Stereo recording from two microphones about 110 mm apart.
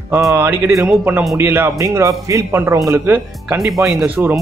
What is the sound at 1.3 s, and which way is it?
Speech, 20° right (ahead or behind).